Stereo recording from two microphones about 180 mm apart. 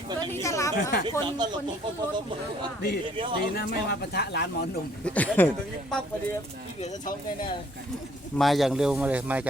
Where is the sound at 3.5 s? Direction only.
65° left (ahead or behind).